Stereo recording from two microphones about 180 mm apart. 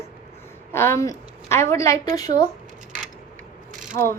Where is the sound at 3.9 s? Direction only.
50° right (ahead or behind).